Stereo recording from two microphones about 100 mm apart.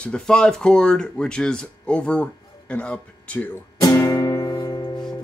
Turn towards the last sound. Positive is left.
turn(degrees=35)  # may be behind; listen again after turning